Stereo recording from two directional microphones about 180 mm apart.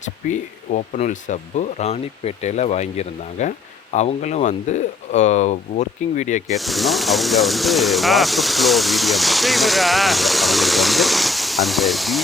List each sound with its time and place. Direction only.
0.0 s speech: 45° left (ahead or behind)
6.5 s speech: centre (ahead or behind)